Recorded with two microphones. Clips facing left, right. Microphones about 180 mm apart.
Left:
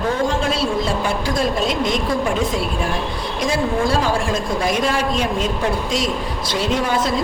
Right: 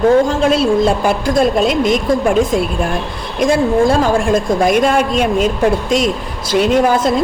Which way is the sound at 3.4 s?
55° right (ahead or behind).